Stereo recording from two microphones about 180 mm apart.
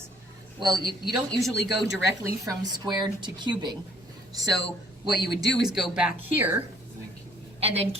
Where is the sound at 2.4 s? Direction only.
25° right (ahead or behind).